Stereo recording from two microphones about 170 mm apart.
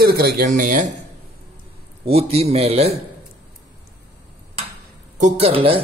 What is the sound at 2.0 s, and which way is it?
Speech, 35° right (ahead or behind).